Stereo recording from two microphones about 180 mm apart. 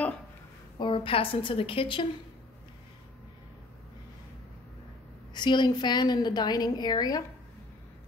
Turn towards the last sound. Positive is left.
turn(degrees=20)  # may be behind; listen again after turning